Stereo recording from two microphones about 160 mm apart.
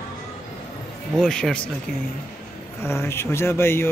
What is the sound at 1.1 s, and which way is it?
Speech, 5° left (ahead or behind).